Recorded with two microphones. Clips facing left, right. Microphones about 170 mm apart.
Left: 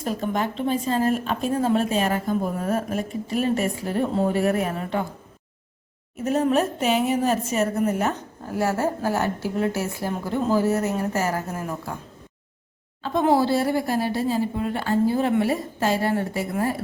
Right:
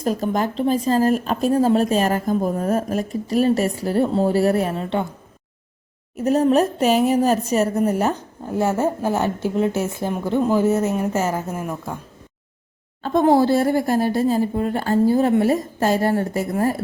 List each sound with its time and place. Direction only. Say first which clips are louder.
0.0 s speech: right 4 dB; 40° right (ahead or behind)
6.1 s speech: right 4 dB; 40° right (ahead or behind)
8.4 s a woman's voice: right 3 dB; 25° right (ahead or behind)
13.0 s speech: right 4 dB; 45° right (ahead or behind)